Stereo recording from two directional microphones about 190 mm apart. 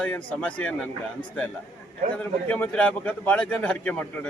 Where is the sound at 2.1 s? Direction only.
5° left (ahead or behind).